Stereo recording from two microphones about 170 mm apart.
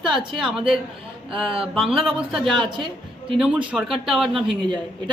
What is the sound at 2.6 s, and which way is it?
Speech, 30° right (ahead or behind).